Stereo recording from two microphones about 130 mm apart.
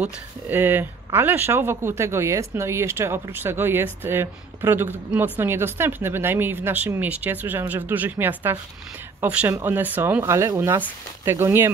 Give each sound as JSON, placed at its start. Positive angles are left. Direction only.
{"t": 0.0, "sound": "speech", "side_deg": -15}